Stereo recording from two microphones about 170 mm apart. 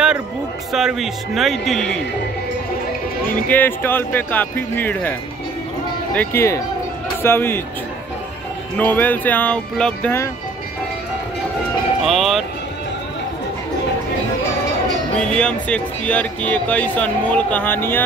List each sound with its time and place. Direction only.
0.7 s a man's voice: centre (ahead or behind)
3.4 s speech: 10° left (ahead or behind)
6.1 s speech: 15° left (ahead or behind)
8.7 s speech: 10° left (ahead or behind)
12.0 s a man's voice: centre (ahead or behind)
15.1 s speech: 5° left (ahead or behind)